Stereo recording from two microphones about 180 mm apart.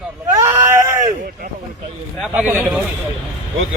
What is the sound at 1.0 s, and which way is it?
Speech, 50° right (ahead or behind).